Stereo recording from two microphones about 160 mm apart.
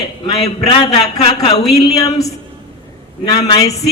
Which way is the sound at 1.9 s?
20° left (ahead or behind).